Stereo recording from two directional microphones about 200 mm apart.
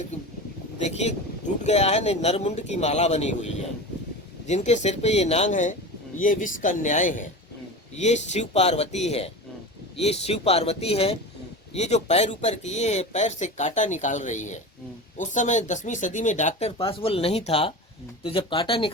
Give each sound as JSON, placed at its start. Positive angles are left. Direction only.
{"t": 0.8, "sound": "a man's voice", "side_deg": 35}